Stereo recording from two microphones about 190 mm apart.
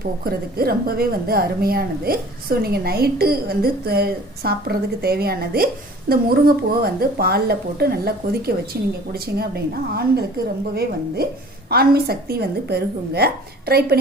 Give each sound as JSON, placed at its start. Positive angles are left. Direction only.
{"t": 0.3, "sound": "a woman's voice", "side_deg": -55}